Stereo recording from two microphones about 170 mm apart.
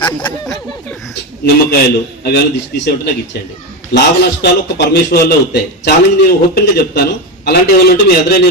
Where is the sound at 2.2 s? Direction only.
70° left (ahead or behind).